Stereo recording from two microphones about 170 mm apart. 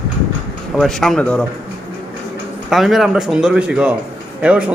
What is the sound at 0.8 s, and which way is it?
Speech, centre (ahead or behind).